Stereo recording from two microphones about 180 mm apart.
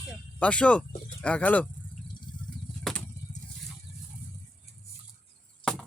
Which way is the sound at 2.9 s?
Centre (ahead or behind).